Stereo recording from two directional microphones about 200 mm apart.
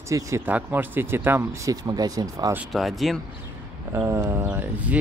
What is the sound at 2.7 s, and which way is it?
Speech, centre (ahead or behind).